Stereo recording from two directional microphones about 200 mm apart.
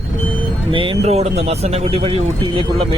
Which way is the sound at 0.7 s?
25° right (ahead or behind).